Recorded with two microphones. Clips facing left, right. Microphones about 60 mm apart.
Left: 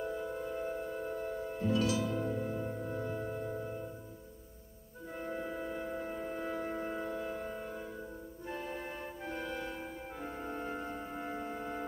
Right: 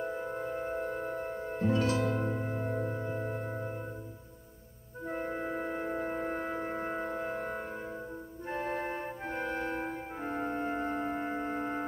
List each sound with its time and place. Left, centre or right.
0.0 s singing bowl: right
5.0 s music: right
6.5 s music: right
8.5 s organ: right
11.2 s music: right